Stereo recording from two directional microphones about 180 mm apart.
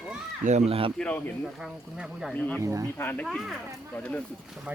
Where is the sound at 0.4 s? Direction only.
35° right (ahead or behind).